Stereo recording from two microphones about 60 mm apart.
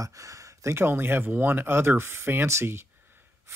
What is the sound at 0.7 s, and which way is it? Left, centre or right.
Speech, right.